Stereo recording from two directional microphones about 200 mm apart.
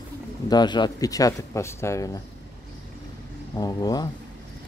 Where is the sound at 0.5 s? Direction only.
20° left (ahead or behind).